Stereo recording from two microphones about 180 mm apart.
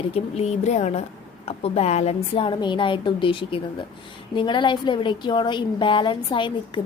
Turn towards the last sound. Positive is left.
turn(degrees=25)  # may be behind; listen again after turning